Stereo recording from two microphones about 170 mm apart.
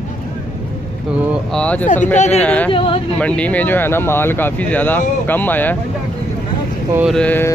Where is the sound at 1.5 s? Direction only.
5° left (ahead or behind).